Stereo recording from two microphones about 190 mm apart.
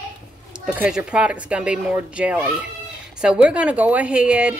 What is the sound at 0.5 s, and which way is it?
Speech, 5° right (ahead or behind).